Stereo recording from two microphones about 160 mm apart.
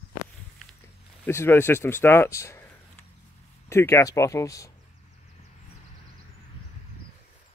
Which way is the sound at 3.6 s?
15° left (ahead or behind).